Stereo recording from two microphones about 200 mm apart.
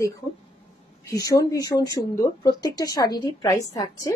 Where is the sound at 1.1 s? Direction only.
15° left (ahead or behind).